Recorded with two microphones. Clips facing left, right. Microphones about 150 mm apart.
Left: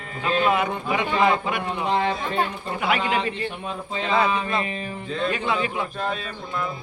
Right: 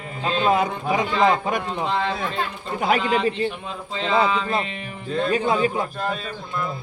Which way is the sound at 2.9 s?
40° right (ahead or behind).